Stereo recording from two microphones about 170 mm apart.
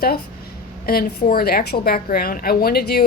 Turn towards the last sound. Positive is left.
turn(degrees=65)  # may be behind; listen again after turning